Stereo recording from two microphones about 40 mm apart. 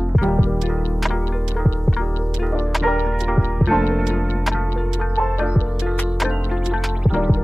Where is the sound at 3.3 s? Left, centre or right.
Centre.